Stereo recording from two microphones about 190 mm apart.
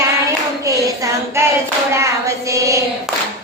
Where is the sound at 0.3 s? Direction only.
15° right (ahead or behind).